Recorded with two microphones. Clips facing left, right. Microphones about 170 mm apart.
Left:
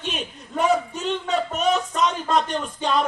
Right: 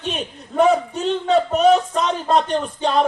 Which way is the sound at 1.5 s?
35° right (ahead or behind).